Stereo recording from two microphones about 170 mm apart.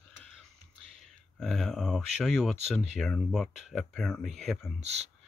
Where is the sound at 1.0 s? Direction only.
Centre (ahead or behind).